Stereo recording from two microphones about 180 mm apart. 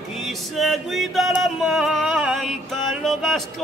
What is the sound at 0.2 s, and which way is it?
Music, centre (ahead or behind).